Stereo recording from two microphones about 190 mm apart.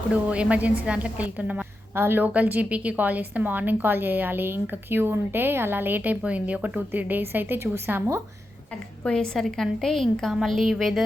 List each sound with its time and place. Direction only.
0.3 s a woman's voice: 5° right (ahead or behind)
9.0 s a woman's voice: 5° left (ahead or behind)